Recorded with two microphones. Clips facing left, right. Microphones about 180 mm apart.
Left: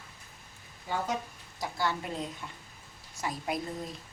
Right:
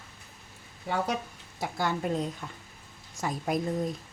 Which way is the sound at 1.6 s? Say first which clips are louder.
Right 3 dB; 50° right (ahead or behind).